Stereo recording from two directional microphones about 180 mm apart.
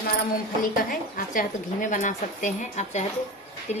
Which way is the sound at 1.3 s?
50° left (ahead or behind).